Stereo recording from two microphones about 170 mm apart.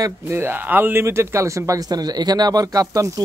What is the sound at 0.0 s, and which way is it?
Speech, 15° right (ahead or behind).